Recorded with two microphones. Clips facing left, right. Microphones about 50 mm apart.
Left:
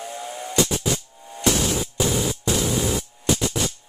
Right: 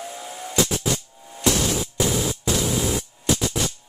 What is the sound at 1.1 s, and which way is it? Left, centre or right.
Music, centre.